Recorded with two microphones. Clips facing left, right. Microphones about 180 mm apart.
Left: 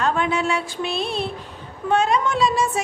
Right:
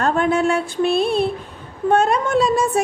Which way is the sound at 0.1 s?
50° right (ahead or behind).